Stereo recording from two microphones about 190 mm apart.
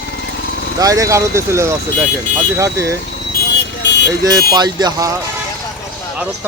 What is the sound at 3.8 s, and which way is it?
Vehicle, 65° left (ahead or behind).